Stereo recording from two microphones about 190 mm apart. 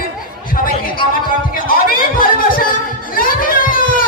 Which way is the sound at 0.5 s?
50° left (ahead or behind).